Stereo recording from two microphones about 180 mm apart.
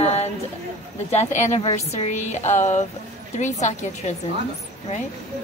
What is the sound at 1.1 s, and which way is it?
Speech, 40° left (ahead or behind).